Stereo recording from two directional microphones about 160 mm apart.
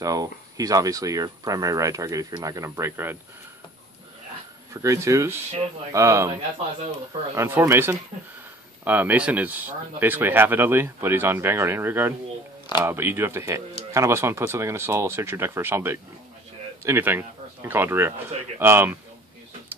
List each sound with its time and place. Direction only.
0.0 s speech: 20° right (ahead or behind)
4.7 s speech: 20° right (ahead or behind)
7.3 s speech: 15° right (ahead or behind)